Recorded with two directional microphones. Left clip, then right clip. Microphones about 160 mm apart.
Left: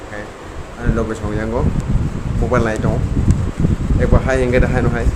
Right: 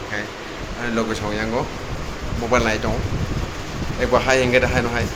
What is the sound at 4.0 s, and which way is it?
Speech, 55° left (ahead or behind).